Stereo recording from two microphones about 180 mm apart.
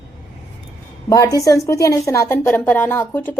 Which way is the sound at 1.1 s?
20° left (ahead or behind).